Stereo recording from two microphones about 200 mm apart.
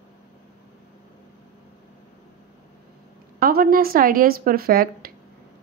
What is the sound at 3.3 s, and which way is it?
A woman's voice, 50° right (ahead or behind).